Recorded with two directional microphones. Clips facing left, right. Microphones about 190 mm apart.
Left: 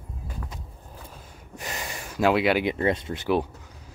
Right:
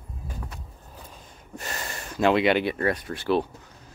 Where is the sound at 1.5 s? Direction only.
15° left (ahead or behind).